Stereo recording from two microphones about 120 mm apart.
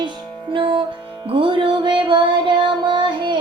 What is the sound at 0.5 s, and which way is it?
Music, 45° right (ahead or behind).